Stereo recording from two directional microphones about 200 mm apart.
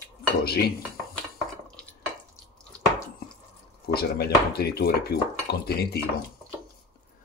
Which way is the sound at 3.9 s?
50° left (ahead or behind).